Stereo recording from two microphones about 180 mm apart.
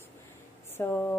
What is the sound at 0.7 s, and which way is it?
Speech, 15° left (ahead or behind).